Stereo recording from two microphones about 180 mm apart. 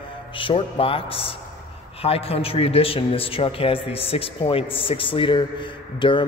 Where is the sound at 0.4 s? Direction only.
30° left (ahead or behind).